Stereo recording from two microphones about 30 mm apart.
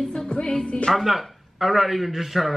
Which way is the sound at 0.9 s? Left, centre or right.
Centre.